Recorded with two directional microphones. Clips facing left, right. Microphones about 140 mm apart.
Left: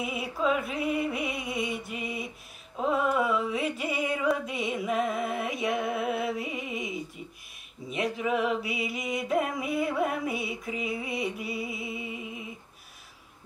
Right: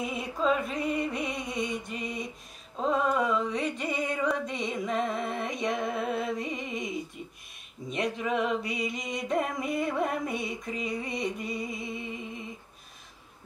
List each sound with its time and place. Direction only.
0.0 s music: 5° left (ahead or behind)